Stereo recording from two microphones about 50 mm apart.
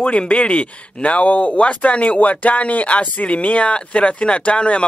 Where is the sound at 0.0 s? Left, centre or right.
Left.